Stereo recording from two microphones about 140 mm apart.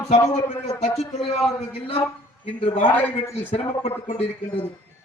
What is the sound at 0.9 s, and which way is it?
Speech, 50° left (ahead or behind).